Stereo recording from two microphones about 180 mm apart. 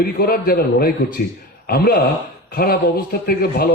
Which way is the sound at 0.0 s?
55° left (ahead or behind).